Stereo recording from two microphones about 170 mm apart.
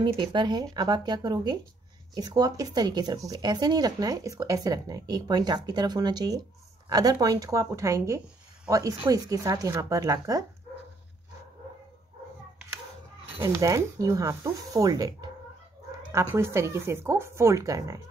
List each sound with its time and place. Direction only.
0.0 s speech: 25° right (ahead or behind)
13.4 s speech: 15° right (ahead or behind)